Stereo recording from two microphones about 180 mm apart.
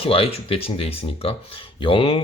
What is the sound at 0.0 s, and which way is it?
Speech, 30° left (ahead or behind).